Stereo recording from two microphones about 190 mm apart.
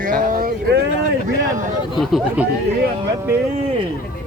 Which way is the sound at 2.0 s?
Centre (ahead or behind).